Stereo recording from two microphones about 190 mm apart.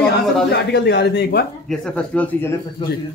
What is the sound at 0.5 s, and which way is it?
Speech, 60° left (ahead or behind).